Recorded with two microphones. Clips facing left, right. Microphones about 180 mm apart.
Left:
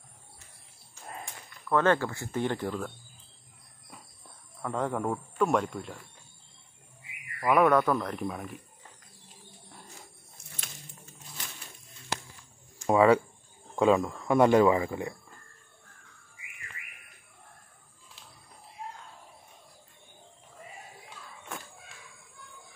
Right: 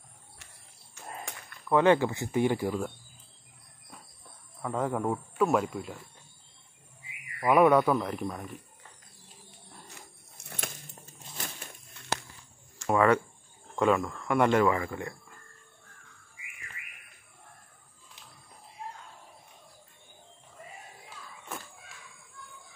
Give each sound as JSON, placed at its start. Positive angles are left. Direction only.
{"t": 1.7, "sound": "speech", "side_deg": -15}
{"t": 4.6, "sound": "speech", "side_deg": -5}
{"t": 7.4, "sound": "speech", "side_deg": -10}
{"t": 10.4, "sound": "a sound", "side_deg": -55}
{"t": 12.8, "sound": "speech", "side_deg": 10}
{"t": 21.5, "sound": "a sound", "side_deg": -5}